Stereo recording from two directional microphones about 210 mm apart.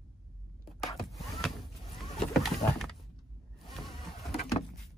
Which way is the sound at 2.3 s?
Centre (ahead or behind).